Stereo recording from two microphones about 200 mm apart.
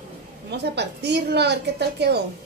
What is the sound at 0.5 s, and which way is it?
A woman's voice, 55° right (ahead or behind).